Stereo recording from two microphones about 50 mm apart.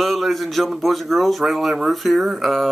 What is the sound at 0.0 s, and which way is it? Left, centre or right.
Speech, centre.